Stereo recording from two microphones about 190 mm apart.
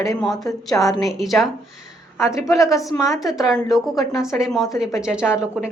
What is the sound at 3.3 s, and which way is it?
Speech, centre (ahead or behind).